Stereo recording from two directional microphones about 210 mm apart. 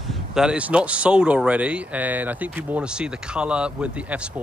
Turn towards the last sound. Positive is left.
turn(degrees=-5)  # may be behind; listen again after turning